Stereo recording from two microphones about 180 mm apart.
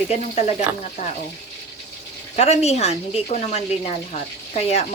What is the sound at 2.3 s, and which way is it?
Speech, 35° left (ahead or behind).